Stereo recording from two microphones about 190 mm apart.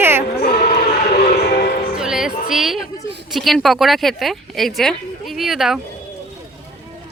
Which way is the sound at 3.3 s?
Centre (ahead or behind).